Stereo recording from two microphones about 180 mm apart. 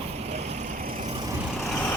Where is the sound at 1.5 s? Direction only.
Centre (ahead or behind).